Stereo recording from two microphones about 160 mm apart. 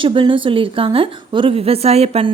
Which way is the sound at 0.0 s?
35° right (ahead or behind).